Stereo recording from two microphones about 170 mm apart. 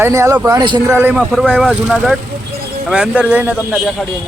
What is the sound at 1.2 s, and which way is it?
Speech, 5° left (ahead or behind).